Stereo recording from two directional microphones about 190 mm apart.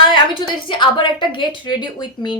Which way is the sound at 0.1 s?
25° left (ahead or behind).